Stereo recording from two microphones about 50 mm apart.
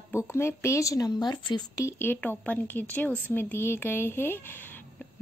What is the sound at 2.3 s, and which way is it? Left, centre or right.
Speech, left.